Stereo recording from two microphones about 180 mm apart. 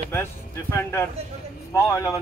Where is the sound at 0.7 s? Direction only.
10° left (ahead or behind).